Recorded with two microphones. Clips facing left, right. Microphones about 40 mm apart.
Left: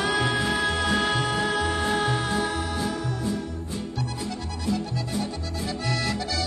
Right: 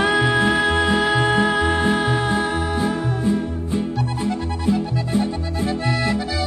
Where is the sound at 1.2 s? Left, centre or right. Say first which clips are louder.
Right 7 dB; right.